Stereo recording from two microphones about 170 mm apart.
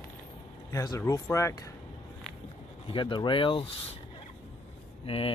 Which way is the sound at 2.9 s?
30° left (ahead or behind).